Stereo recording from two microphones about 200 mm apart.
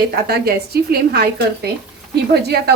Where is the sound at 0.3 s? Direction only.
50° right (ahead or behind).